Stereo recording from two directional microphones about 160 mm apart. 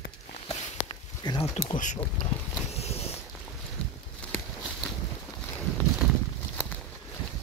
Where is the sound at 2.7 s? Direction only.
40° left (ahead or behind).